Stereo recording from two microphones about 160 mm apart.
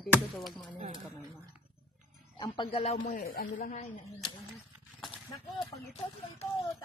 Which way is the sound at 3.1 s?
65° left (ahead or behind).